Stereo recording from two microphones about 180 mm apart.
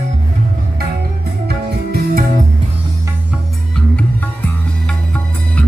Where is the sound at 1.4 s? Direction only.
60° right (ahead or behind).